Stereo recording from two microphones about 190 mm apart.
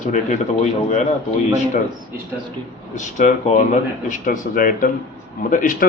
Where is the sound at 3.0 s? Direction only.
40° left (ahead or behind).